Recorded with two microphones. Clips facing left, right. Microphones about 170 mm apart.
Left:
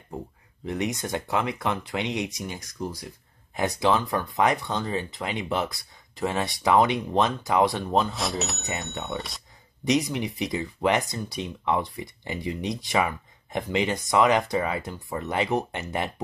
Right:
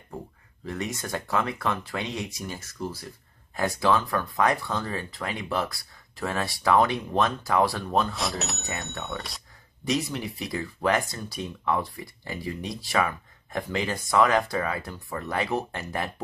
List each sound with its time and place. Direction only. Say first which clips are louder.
0.7 s speech: left 4 dB; 20° left (ahead or behind)
8.2 s speech: left 2 dB; centre (ahead or behind)
9.8 s speech: left 4 dB; 15° left (ahead or behind)